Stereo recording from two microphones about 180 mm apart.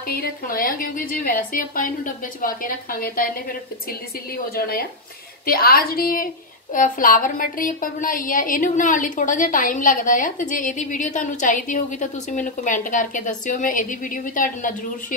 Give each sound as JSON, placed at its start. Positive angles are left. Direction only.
{"t": 0.1, "sound": "a woman's voice", "side_deg": 55}
{"t": 4.6, "sound": "a woman's voice", "side_deg": 55}